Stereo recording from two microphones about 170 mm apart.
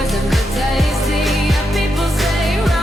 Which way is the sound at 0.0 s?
Centre (ahead or behind).